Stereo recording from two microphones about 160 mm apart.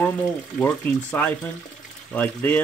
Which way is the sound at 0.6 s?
10° left (ahead or behind).